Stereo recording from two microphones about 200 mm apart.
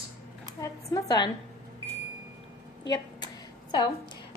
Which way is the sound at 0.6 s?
15° left (ahead or behind).